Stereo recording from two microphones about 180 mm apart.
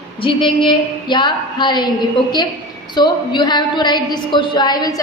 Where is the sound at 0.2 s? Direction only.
25° left (ahead or behind).